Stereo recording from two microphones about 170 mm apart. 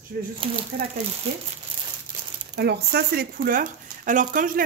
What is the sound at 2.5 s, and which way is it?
Speech, 75° right (ahead or behind).